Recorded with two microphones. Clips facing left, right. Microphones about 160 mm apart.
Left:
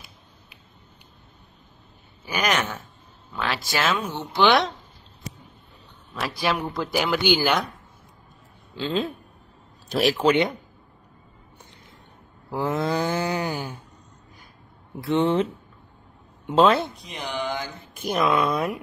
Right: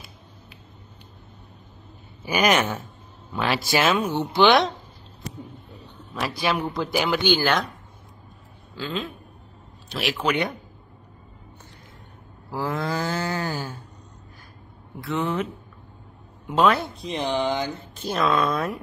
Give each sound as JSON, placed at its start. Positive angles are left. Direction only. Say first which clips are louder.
{"t": 2.2, "sound": "speech", "louder": "right 4 dB", "side_deg": -10}
{"t": 4.4, "sound": "speech", "louder": "right 2 dB", "side_deg": 0}
{"t": 6.1, "sound": "speech", "louder": "right 1 dB", "side_deg": 0}
{"t": 8.7, "sound": "speech", "louder": "left 4 dB", "side_deg": 30}
{"t": 9.8, "sound": "speech", "louder": "left 5 dB", "side_deg": 40}
{"t": 12.4, "sound": "speech", "louder": "left 2 dB", "side_deg": 20}
{"t": 15.0, "sound": "speech", "louder": "left 5 dB", "side_deg": 30}
{"t": 16.5, "sound": "speech", "louder": "left 2 dB", "side_deg": 25}
{"t": 17.0, "sound": "speech", "louder": "right 6 dB", "side_deg": -25}
{"t": 17.9, "sound": "speech", "louder": "left 1 dB", "side_deg": 15}